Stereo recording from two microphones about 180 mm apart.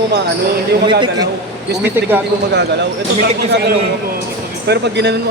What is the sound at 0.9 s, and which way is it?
Speech, 25° right (ahead or behind).